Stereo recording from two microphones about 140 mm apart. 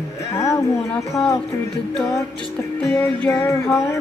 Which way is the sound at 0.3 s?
20° left (ahead or behind).